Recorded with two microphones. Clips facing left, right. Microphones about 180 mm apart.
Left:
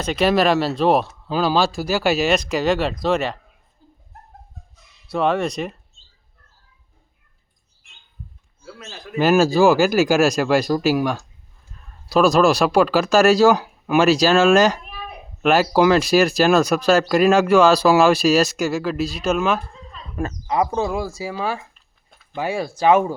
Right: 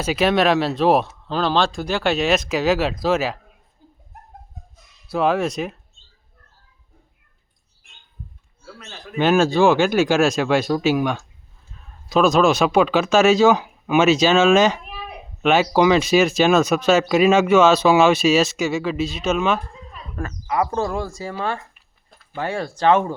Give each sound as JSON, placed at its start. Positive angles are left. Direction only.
{"t": 0.0, "sound": "speech", "side_deg": -5}
{"t": 5.0, "sound": "speech", "side_deg": 0}
{"t": 8.6, "sound": "speech", "side_deg": 5}
{"t": 20.2, "sound": "speech", "side_deg": 25}
{"t": 20.7, "sound": "speech", "side_deg": 5}